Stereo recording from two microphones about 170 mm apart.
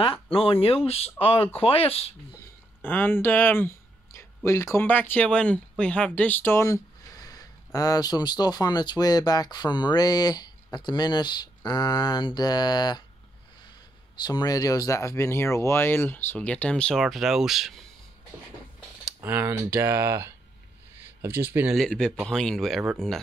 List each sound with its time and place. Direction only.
0.0 s speech: 30° left (ahead or behind)
2.4 s speech: 10° left (ahead or behind)
14.1 s speech: 25° left (ahead or behind); by 17.8 s centre (ahead or behind)
19.2 s speech: 15° right (ahead or behind)
21.7 s speech: 5° left (ahead or behind)